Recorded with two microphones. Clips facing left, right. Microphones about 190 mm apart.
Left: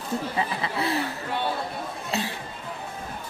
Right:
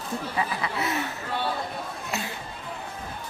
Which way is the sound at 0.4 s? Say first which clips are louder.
Right 2 dB; 30° left (ahead or behind).